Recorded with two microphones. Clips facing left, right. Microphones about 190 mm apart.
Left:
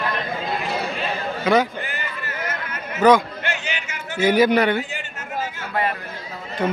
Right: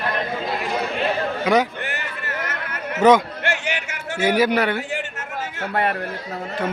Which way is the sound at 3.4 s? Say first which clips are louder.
Right 3 dB; 75° right (ahead or behind).